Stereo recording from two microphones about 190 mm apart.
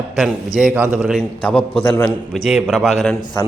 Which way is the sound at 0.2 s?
5° right (ahead or behind).